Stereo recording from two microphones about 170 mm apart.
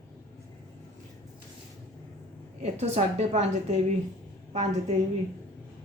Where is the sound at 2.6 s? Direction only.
40° right (ahead or behind).